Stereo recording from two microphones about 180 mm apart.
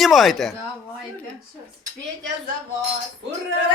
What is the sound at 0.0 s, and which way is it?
Speech, centre (ahead or behind).